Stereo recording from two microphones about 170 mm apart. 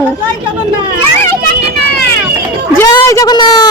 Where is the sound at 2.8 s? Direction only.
20° left (ahead or behind).